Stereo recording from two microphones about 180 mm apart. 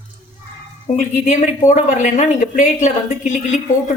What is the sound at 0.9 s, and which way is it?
Speech, 45° left (ahead or behind).